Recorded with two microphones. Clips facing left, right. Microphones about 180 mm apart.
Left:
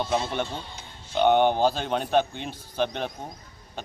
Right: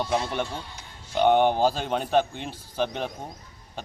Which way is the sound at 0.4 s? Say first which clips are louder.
Even; 20° left (ahead or behind).